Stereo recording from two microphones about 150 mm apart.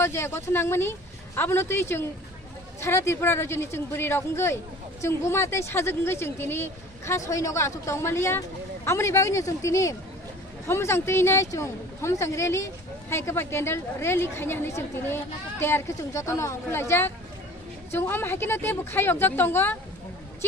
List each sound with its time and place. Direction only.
0.0 s a woman's voice: 15° left (ahead or behind)